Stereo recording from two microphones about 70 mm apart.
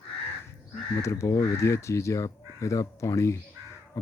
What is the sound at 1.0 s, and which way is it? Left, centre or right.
Speech, left.